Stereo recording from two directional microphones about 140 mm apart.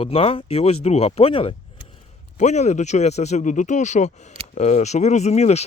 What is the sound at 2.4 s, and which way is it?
Speech, 55° left (ahead or behind).